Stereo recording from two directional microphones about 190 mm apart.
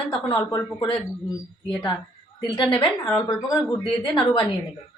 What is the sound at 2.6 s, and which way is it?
Speech, 25° left (ahead or behind).